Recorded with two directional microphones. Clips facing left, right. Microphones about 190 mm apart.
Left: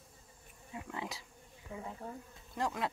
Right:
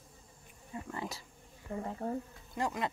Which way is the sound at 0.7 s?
5° left (ahead or behind).